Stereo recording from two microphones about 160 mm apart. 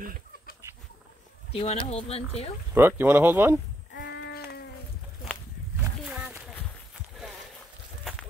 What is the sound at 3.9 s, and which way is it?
Sheep, 90° left.